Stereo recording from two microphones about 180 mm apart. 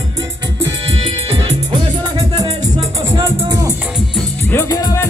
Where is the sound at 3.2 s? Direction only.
15° right (ahead or behind).